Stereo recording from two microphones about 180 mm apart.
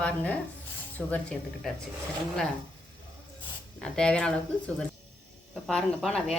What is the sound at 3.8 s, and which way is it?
A woman's voice, 5° left (ahead or behind).